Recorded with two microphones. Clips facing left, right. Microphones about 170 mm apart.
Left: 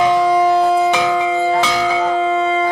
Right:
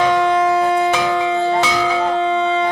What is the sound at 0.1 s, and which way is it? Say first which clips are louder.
Music: left 2 dB; 5° left (ahead or behind).